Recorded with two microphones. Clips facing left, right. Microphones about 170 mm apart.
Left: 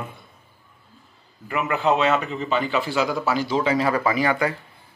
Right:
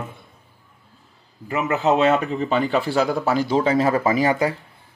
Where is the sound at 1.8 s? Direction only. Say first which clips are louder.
Right 3 dB; 40° right (ahead or behind).